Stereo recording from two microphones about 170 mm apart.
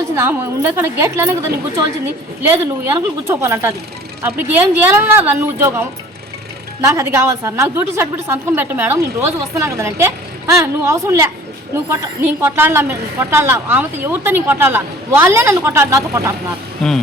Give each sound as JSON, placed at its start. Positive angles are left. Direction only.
{"t": 0.2, "sound": "a woman's voice", "side_deg": -15}
{"t": 2.8, "sound": "a woman's voice", "side_deg": -15}
{"t": 16.8, "sound": "speech", "side_deg": 5}